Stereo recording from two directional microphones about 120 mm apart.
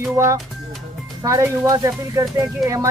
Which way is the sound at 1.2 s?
25° right (ahead or behind).